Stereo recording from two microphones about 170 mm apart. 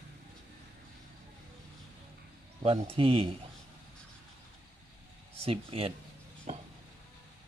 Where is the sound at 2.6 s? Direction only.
35° right (ahead or behind).